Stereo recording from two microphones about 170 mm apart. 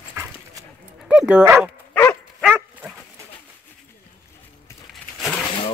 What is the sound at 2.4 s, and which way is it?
Dog, 15° right (ahead or behind).